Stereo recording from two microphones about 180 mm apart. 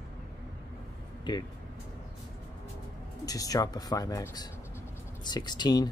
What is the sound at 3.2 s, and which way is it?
Speech, 20° left (ahead or behind).